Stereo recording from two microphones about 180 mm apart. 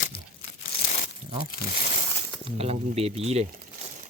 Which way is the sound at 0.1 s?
60° left (ahead or behind).